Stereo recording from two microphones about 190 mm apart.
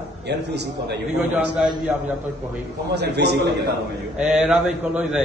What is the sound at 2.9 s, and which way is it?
Speech, 60° right (ahead or behind).